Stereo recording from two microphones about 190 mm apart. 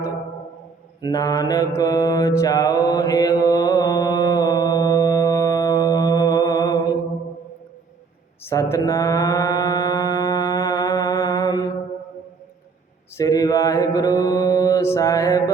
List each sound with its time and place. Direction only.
1.0 s mantra: 20° left (ahead or behind)
8.4 s mantra: 15° left (ahead or behind)
13.1 s mantra: 15° left (ahead or behind)